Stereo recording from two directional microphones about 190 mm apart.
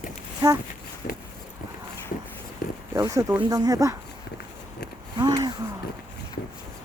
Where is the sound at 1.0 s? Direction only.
50° left (ahead or behind).